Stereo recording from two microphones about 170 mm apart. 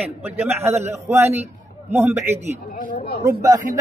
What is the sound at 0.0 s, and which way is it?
A man's voice, 10° right (ahead or behind).